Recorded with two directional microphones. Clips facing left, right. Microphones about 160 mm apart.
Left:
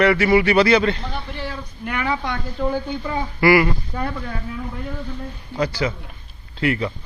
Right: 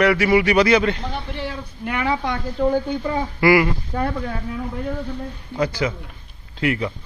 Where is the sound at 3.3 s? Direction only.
20° right (ahead or behind).